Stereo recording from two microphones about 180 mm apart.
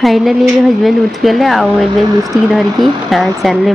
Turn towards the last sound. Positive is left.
turn(degrees=0)  # may be behind; listen again after turning